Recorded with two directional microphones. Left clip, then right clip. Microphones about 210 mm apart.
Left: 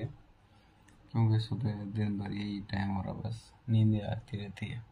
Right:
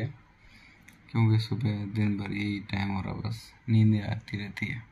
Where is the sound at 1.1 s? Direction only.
15° right (ahead or behind).